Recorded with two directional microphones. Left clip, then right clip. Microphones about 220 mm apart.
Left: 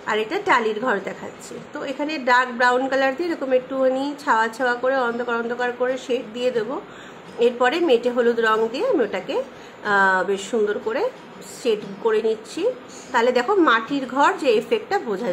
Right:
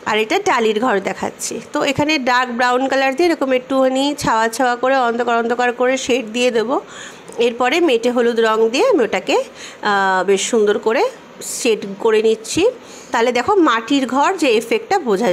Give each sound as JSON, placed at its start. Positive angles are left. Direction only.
{"t": 0.0, "sound": "a woman's voice", "side_deg": -35}